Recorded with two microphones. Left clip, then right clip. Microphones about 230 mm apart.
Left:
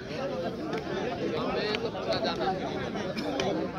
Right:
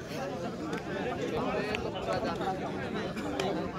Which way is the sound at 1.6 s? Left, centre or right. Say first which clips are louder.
Left 3 dB; left.